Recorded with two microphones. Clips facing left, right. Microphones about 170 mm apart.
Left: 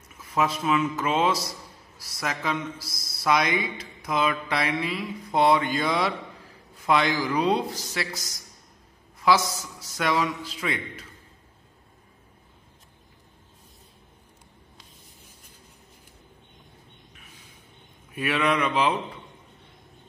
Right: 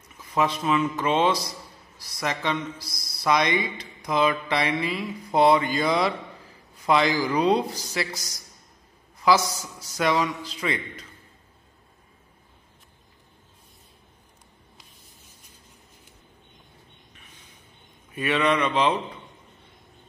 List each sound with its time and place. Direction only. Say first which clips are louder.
0.2 s speech: right 1 dB; 5° left (ahead or behind)
17.1 s a sound: left 1 dB; 5° left (ahead or behind)
18.1 s speech: right 2 dB; 5° left (ahead or behind)